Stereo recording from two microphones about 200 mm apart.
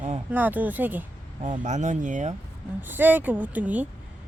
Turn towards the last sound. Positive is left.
turn(degrees=-5)  # may be behind; listen again after turning